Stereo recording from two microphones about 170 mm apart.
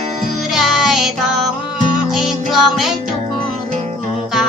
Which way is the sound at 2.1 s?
Centre (ahead or behind).